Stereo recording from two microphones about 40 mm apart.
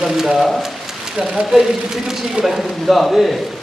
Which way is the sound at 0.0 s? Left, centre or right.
Centre.